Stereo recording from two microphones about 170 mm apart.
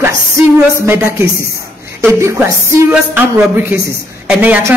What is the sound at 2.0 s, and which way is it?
A woman's voice, 15° right (ahead or behind).